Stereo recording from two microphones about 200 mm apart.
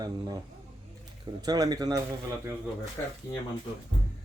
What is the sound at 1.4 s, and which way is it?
Speech, 20° right (ahead or behind).